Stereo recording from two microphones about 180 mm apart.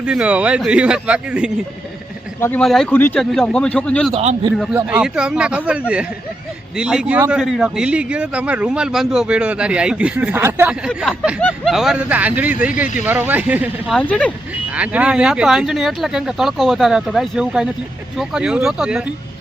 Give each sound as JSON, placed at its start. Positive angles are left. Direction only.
{"t": 0.0, "sound": "a man's voice", "side_deg": -5}
{"t": 2.4, "sound": "a man's voice", "side_deg": 5}
{"t": 4.1, "sound": "a man's voice", "side_deg": -35}
{"t": 4.7, "sound": "a man's voice", "side_deg": -5}
{"t": 11.3, "sound": "speech", "side_deg": 5}
{"t": 13.9, "sound": "speech", "side_deg": 5}
{"t": 14.7, "sound": "a man's voice", "side_deg": -5}